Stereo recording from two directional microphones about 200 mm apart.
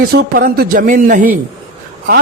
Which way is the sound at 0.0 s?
50° right (ahead or behind).